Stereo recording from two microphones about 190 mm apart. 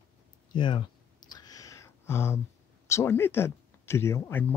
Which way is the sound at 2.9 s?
15° left (ahead or behind).